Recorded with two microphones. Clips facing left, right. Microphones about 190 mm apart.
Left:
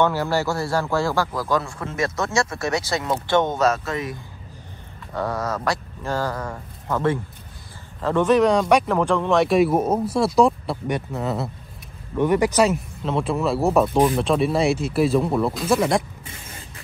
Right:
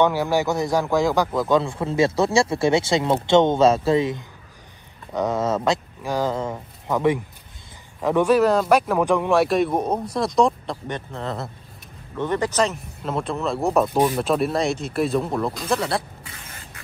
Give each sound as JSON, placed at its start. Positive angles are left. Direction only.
{"t": 0.0, "sound": "speech", "side_deg": -15}
{"t": 13.0, "sound": "speech", "side_deg": 0}